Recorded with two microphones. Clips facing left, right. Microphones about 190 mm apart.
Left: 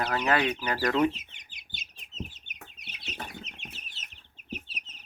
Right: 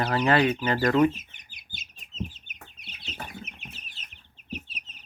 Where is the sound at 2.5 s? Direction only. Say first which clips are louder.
Even; 65° left (ahead or behind).